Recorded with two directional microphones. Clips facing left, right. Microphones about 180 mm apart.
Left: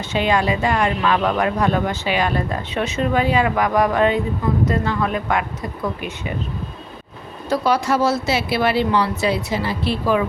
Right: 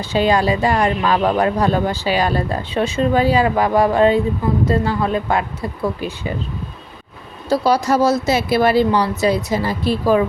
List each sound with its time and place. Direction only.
0.0 s speech: 35° right (ahead or behind)
7.5 s speech: 35° right (ahead or behind)